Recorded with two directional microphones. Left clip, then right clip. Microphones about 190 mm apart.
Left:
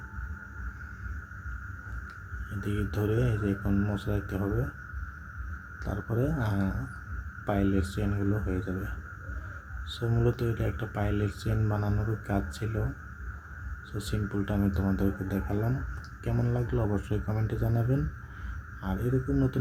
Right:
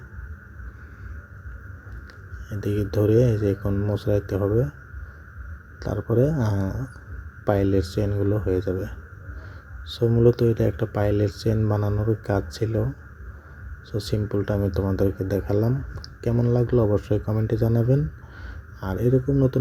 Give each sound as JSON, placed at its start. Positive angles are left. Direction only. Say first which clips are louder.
{"t": 2.6, "sound": "speech", "louder": "right 9 dB", "side_deg": -30}
{"t": 5.8, "sound": "speech", "louder": "right 10 dB", "side_deg": -30}
{"t": 9.9, "sound": "speech", "louder": "right 11 dB", "side_deg": -25}
{"t": 13.9, "sound": "speech", "louder": "right 9 dB", "side_deg": -30}
{"t": 19.3, "sound": "speech", "louder": "right 7 dB", "side_deg": -25}